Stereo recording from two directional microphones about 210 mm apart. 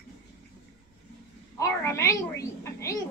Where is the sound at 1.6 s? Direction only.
10° left (ahead or behind).